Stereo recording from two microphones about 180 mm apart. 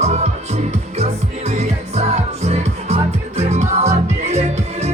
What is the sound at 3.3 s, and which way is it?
Music, 40° right (ahead or behind).